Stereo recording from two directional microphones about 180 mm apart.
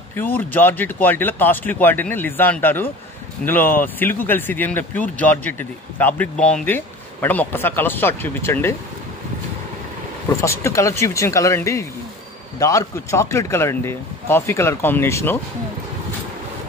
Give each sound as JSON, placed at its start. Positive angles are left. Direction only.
{"t": 0.1, "sound": "speech", "side_deg": 10}
{"t": 10.4, "sound": "speech", "side_deg": 15}